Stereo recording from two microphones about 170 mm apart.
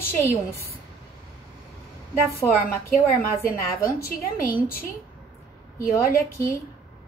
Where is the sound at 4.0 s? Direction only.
60° left (ahead or behind).